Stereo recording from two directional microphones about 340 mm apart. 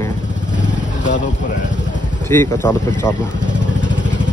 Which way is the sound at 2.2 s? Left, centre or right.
Centre.